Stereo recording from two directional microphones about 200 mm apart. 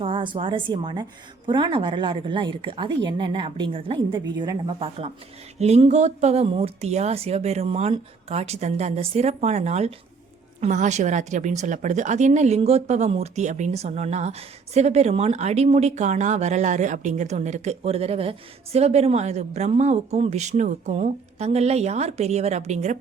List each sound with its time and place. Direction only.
0.0 s a woman's voice: 25° right (ahead or behind)